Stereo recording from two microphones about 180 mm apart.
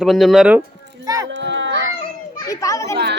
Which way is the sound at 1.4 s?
85° right.